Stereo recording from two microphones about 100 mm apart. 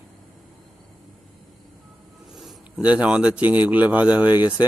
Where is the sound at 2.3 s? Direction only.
5° right (ahead or behind).